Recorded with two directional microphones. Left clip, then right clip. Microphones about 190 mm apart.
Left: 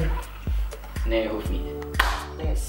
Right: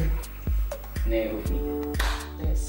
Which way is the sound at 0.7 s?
10° right (ahead or behind).